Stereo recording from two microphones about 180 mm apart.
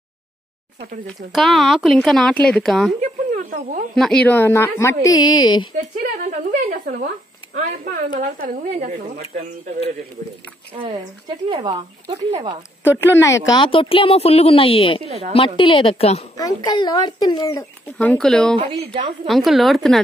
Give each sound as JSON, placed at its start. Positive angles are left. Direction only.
{"t": 1.3, "sound": "a woman's voice", "side_deg": 0}
{"t": 3.0, "sound": "snake", "side_deg": -45}
{"t": 3.9, "sound": "a woman's voice", "side_deg": 5}
{"t": 5.8, "sound": "a sound", "side_deg": -45}
{"t": 7.5, "sound": "a woman's voice", "side_deg": -45}
{"t": 10.7, "sound": "a woman's voice", "side_deg": -35}
{"t": 13.0, "sound": "speech", "side_deg": 15}
{"t": 15.0, "sound": "a woman's voice", "side_deg": -35}
{"t": 15.3, "sound": "a woman's voice", "side_deg": 30}
{"t": 16.3, "sound": "speech", "side_deg": 20}
{"t": 17.8, "sound": "a woman's voice", "side_deg": 10}